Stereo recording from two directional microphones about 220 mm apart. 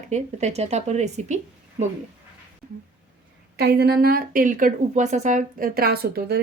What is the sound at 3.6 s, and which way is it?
A woman's voice, 45° right (ahead or behind).